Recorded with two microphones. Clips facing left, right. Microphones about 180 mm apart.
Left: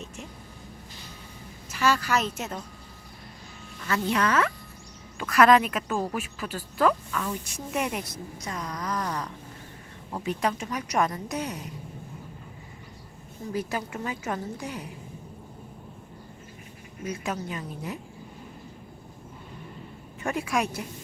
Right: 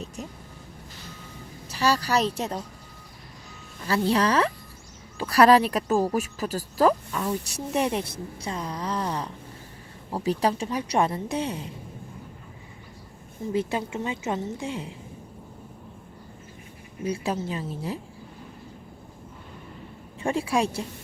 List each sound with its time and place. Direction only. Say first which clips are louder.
1.7 s speech: right 1 dB; 35° right (ahead or behind)
3.8 s speech: right 3 dB; 30° right (ahead or behind)
13.5 s speech: right 4 dB; 25° right (ahead or behind)
17.0 s speech: right 4 dB; 30° right (ahead or behind)
20.2 s speech: right 3 dB; 30° right (ahead or behind)